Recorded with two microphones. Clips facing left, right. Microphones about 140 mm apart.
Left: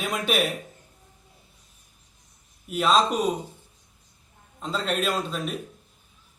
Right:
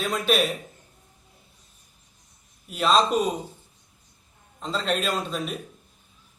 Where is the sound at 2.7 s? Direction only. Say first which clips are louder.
Even; 5° left (ahead or behind).